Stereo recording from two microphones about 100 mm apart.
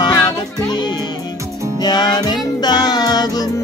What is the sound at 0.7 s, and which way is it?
Music, 45° left (ahead or behind).